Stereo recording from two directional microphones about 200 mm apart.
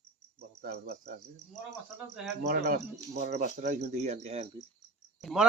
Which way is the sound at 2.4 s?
45° right (ahead or behind).